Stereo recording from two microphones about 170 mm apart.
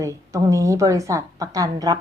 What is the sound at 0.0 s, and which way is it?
A woman's voice, 20° right (ahead or behind).